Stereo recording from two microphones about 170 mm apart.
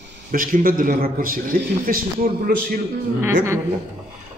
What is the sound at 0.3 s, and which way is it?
A man's voice, 55° right (ahead or behind).